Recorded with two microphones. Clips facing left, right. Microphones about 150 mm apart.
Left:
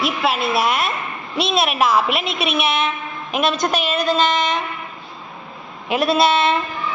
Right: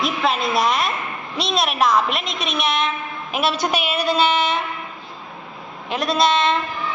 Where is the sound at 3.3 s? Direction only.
5° right (ahead or behind).